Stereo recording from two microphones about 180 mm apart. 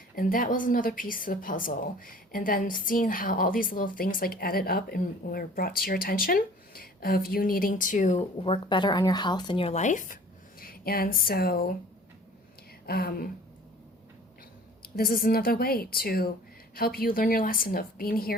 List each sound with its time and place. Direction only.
0.2 s a woman's voice: 50° left (ahead or behind)
8.4 s speech: 30° left (ahead or behind); by 10.2 s 45° left (ahead or behind)
10.6 s speech: 55° left (ahead or behind)
12.8 s speech: 55° left (ahead or behind)
14.8 s a woman's voice: 55° left (ahead or behind)